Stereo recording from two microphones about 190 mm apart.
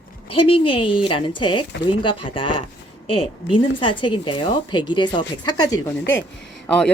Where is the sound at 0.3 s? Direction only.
30° left (ahead or behind).